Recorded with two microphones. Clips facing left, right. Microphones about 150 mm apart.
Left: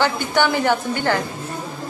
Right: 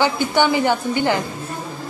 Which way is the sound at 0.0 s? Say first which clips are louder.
Right 1 dB; 15° right (ahead or behind).